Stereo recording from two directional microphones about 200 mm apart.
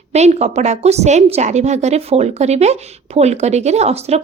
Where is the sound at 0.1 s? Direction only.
35° right (ahead or behind).